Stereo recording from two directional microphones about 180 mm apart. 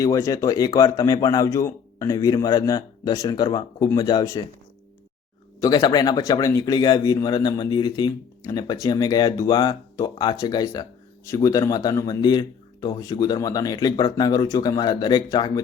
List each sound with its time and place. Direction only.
0.0 s speech: 20° left (ahead or behind)
5.5 s speech: 20° left (ahead or behind)